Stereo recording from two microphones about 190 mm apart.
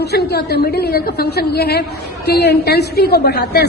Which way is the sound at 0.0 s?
60° left (ahead or behind).